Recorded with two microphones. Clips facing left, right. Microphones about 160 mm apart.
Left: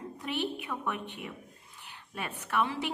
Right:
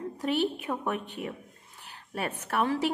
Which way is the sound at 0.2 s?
40° right (ahead or behind).